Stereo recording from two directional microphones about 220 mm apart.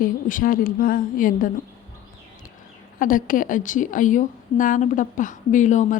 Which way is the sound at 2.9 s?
40° left (ahead or behind).